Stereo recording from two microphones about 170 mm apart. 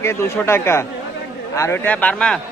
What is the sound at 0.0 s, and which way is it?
A man's voice, 15° left (ahead or behind).